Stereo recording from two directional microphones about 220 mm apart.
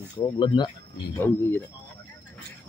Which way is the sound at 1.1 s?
10° left (ahead or behind).